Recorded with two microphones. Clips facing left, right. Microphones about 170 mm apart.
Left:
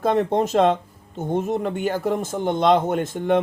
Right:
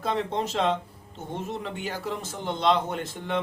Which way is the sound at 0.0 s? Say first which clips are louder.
Left 8 dB; 50° left (ahead or behind).